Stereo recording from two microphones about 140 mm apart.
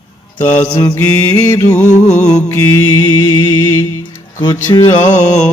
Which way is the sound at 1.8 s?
55° left (ahead or behind).